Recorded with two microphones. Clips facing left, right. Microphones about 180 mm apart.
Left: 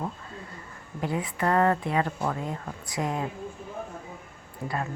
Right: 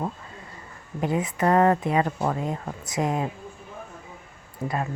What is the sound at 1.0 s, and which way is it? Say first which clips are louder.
Speech: right 4 dB; 20° right (ahead or behind).